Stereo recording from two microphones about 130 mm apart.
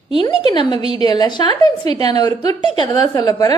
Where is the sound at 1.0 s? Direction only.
35° left (ahead or behind).